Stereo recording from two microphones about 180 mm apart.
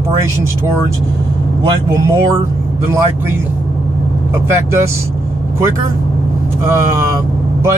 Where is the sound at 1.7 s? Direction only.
15° right (ahead or behind).